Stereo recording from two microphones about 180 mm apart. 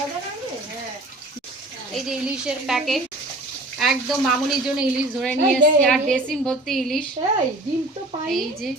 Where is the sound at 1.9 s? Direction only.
5° right (ahead or behind).